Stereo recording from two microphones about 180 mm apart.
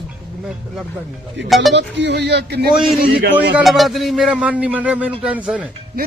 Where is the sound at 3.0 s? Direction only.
60° right (ahead or behind).